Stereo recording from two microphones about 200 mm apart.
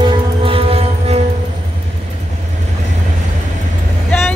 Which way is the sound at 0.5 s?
30° right (ahead or behind).